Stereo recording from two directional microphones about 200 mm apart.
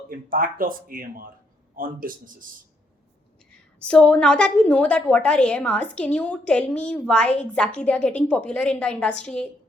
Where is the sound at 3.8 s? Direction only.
5° left (ahead or behind).